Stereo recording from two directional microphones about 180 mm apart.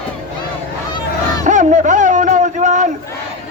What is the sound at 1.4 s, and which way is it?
Music, 45° right (ahead or behind).